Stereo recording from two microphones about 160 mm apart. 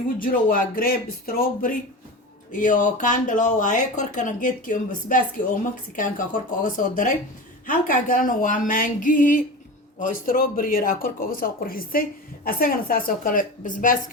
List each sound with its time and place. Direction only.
0.2 s speech: 60° left (ahead or behind)
2.5 s speech: 55° left (ahead or behind)